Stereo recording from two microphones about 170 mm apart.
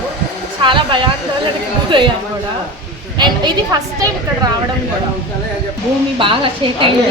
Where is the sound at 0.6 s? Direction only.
30° right (ahead or behind).